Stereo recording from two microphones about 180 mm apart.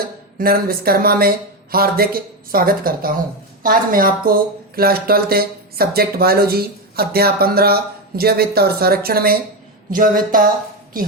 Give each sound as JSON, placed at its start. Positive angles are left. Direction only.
{"t": 0.3, "sound": "speech", "side_deg": -55}